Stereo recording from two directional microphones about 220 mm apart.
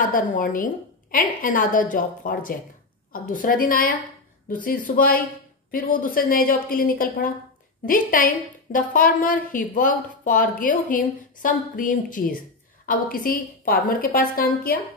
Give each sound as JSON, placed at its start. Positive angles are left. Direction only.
{"t": 0.1, "sound": "a woman's voice", "side_deg": 40}